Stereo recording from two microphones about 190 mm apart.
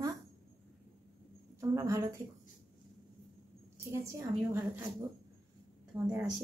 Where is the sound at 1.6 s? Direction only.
15° right (ahead or behind).